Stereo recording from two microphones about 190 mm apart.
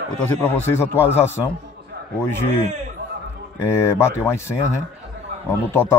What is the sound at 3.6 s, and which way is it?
Speech, 15° left (ahead or behind).